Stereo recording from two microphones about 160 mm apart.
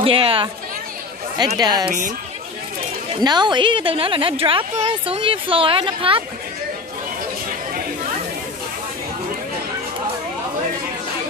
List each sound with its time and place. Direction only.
0.0 s a woman's voice: 35° right (ahead or behind)
1.6 s speech: 25° right (ahead or behind)
3.1 s a woman's voice: 25° right (ahead or behind)